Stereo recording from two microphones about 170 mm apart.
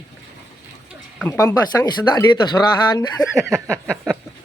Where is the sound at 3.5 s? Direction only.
5° left (ahead or behind).